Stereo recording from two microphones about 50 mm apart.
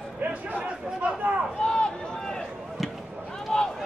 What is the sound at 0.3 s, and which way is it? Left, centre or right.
Speech, right.